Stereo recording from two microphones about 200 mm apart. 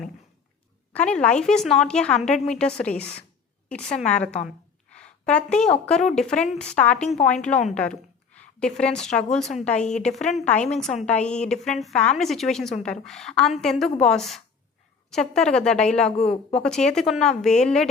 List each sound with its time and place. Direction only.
0.9 s a woman's voice: 5° left (ahead or behind)
4.4 s a sound: 5° left (ahead or behind)
5.8 s a woman's voice: 5° left (ahead or behind)
16.3 s speech: 30° left (ahead or behind)
16.6 s a woman's voice: 5° left (ahead or behind)